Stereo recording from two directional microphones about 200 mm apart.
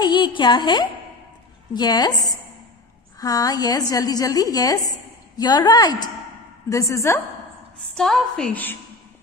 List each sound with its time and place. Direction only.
0.0 s a woman's voice: 20° left (ahead or behind)
7.9 s a woman's voice: centre (ahead or behind)